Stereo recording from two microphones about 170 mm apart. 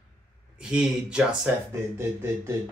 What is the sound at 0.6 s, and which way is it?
Speech, 5° right (ahead or behind).